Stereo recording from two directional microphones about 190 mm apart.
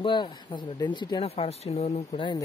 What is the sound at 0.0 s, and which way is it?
Speech, 25° left (ahead or behind).